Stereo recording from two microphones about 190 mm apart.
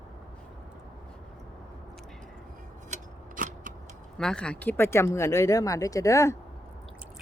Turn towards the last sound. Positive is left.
turn(degrees=15)  # may be behind; listen again after turning